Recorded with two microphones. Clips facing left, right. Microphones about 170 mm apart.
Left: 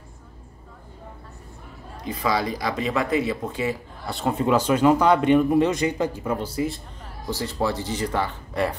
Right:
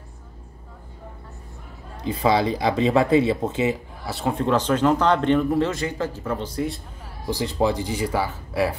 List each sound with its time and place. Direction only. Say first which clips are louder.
2.0 s speech: right 4 dB; 30° right (ahead or behind)
4.0 s speech: left 1 dB; centre (ahead or behind)
7.2 s speech: right 3 dB; 15° right (ahead or behind)